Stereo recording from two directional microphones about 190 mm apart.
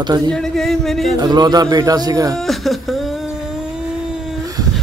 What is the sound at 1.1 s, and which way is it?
Speech, 20° right (ahead or behind).